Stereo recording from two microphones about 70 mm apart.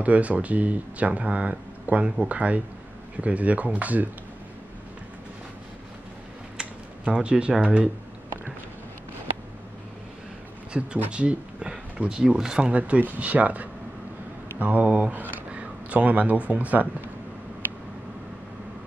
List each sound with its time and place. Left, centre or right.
0.0 s speech: centre
6.6 s a sound: centre
7.6 s speech: centre
10.8 s speech: centre